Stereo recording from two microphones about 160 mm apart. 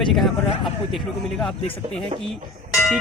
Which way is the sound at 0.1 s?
Centre (ahead or behind).